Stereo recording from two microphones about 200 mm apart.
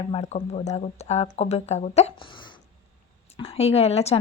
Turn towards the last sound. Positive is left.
turn(degrees=30)  # may be behind; listen again after turning